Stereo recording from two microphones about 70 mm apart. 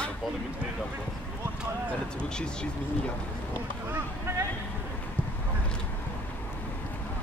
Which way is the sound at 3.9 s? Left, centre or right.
Right.